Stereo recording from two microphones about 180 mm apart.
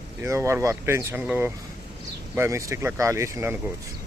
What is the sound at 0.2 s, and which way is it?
Speech, 15° right (ahead or behind).